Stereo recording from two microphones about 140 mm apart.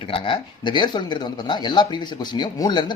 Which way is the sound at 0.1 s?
35° left (ahead or behind).